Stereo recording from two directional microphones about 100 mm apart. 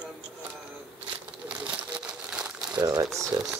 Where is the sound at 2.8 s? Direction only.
35° right (ahead or behind).